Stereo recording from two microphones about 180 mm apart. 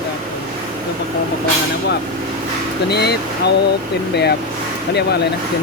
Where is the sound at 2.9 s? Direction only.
65° left (ahead or behind).